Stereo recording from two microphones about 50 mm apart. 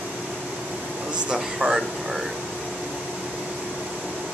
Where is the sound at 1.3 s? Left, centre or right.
Centre.